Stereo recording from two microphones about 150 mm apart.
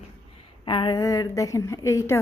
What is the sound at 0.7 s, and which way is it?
A woman's voice, 30° left (ahead or behind).